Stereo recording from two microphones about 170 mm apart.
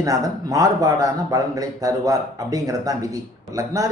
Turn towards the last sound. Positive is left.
turn(degrees=-20)  # may be behind; listen again after turning